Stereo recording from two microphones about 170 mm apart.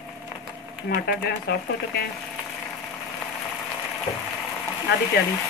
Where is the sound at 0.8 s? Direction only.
65° left (ahead or behind).